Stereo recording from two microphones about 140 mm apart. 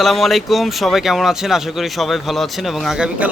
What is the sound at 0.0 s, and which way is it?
Speech, centre (ahead or behind).